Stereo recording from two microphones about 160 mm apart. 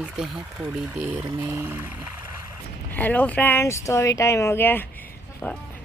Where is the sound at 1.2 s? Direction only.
25° right (ahead or behind).